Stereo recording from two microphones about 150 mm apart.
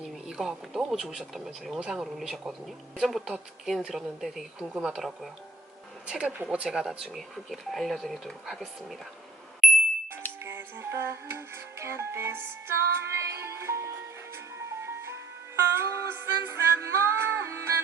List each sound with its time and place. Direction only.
0.3 s speech: 5° right (ahead or behind)
9.6 s ding: centre (ahead or behind)
10.1 s music: 15° right (ahead or behind)
15.5 s music: 15° right (ahead or behind)